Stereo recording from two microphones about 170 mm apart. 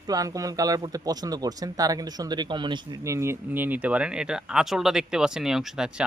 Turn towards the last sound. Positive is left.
turn(degrees=-5)  # may be behind; listen again after turning